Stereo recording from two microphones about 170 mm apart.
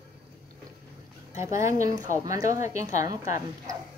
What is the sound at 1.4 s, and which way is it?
A woman's voice, 15° right (ahead or behind).